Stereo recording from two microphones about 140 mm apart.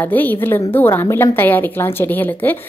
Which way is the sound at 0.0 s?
15° left (ahead or behind).